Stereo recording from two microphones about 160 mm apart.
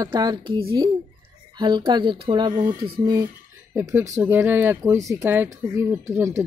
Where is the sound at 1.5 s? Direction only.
30° right (ahead or behind).